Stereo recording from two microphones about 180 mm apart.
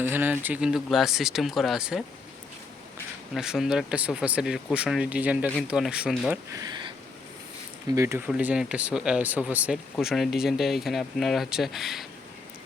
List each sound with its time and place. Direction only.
0.0 s speech: 10° right (ahead or behind)
3.3 s speech: 5° right (ahead or behind)
6.5 s speech: 20° right (ahead or behind)
7.9 s speech: 15° right (ahead or behind)